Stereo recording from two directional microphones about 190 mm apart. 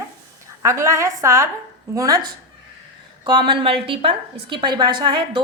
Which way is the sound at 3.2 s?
25° right (ahead or behind).